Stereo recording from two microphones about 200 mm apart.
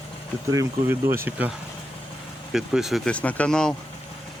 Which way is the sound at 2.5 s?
Centre (ahead or behind).